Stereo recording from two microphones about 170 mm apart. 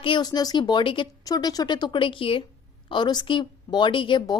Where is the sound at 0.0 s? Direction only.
25° left (ahead or behind).